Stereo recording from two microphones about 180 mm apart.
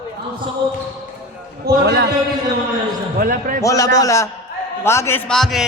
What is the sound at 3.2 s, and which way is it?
Speech, 50° right (ahead or behind).